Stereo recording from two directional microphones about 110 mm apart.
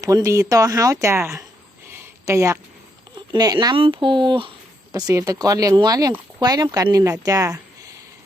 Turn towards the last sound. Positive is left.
turn(degrees=-30)  # may be behind; listen again after turning